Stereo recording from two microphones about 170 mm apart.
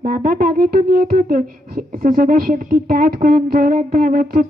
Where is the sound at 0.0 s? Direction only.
55° right (ahead or behind).